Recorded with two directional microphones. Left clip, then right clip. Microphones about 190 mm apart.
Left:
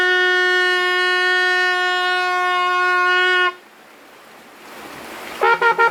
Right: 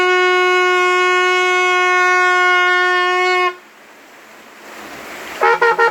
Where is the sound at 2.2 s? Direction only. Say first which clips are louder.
Right 6 dB; 15° left (ahead or behind).